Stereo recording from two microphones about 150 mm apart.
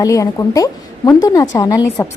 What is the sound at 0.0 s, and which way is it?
A woman's voice, 20° left (ahead or behind).